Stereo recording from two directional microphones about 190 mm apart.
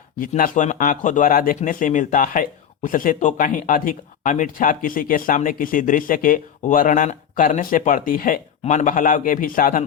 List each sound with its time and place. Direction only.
0.2 s speech: 45° left (ahead or behind)